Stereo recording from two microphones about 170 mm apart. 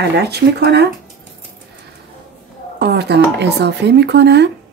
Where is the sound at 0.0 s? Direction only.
70° right (ahead or behind).